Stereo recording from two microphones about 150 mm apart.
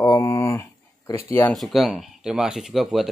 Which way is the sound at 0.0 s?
20° left (ahead or behind).